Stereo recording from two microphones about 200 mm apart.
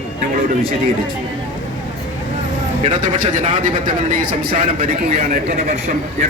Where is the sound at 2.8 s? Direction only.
40° right (ahead or behind).